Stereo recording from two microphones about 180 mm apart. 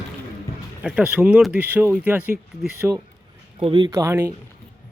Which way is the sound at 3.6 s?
30° right (ahead or behind).